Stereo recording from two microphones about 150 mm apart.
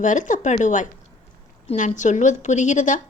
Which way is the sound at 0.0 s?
55° left (ahead or behind).